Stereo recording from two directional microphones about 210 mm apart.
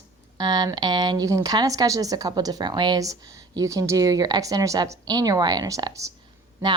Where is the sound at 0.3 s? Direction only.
20° right (ahead or behind).